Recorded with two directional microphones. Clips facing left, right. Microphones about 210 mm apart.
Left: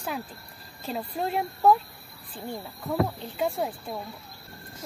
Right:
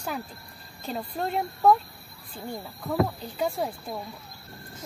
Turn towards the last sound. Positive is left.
turn(degrees=0)  # may be behind; listen again after turning